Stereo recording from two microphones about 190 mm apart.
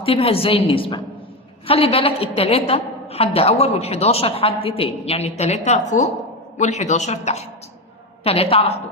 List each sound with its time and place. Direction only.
0.0 s a woman's voice: 30° left (ahead or behind)